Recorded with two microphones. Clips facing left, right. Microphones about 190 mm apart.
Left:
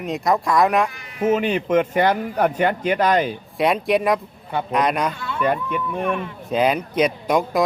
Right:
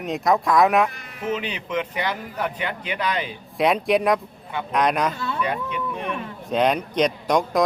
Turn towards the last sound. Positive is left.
turn(degrees=5)  # may be behind; listen again after turning